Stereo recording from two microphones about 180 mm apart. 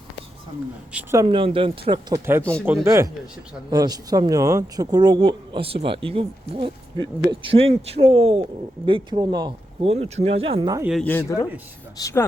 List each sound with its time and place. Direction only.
0.9 s speech: 20° right (ahead or behind)
2.4 s speech: 5° left (ahead or behind)
2.8 s speech: 15° right (ahead or behind)
11.0 s speech: 15° left (ahead or behind)